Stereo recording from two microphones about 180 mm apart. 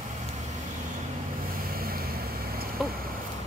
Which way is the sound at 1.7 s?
55° right (ahead or behind).